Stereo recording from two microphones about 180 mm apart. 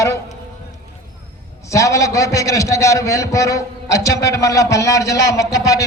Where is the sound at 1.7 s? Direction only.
15° left (ahead or behind).